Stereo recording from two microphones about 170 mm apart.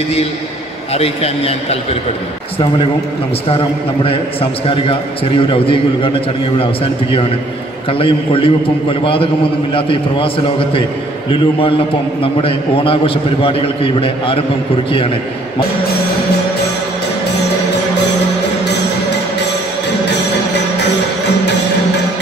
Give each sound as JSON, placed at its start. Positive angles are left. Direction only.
{"t": 0.9, "sound": "a man's voice", "side_deg": 35}
{"t": 4.0, "sound": "a man's voice", "side_deg": 35}